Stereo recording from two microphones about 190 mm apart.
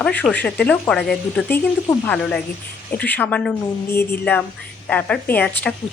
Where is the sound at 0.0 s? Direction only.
5° left (ahead or behind).